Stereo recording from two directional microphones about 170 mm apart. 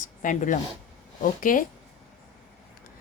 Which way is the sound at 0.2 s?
50° left (ahead or behind).